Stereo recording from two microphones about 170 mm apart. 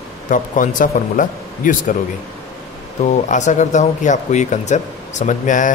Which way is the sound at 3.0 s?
45° left (ahead or behind).